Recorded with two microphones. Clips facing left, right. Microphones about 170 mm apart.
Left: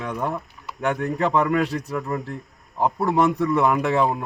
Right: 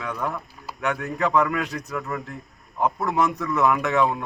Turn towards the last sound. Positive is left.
turn(degrees=30)  # may be behind; listen again after turning